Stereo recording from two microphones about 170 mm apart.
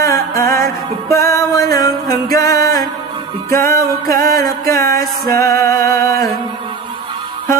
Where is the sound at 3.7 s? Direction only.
55° right (ahead or behind).